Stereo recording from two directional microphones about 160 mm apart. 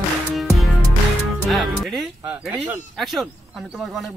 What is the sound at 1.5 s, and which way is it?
A man's voice, centre (ahead or behind).